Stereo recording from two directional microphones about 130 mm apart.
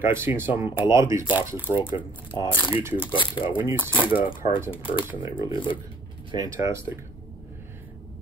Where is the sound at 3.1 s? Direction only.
40° left (ahead or behind).